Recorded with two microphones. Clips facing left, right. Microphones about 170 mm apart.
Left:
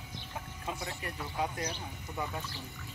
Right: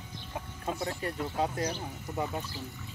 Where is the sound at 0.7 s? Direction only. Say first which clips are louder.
Right 6 dB; 35° right (ahead or behind).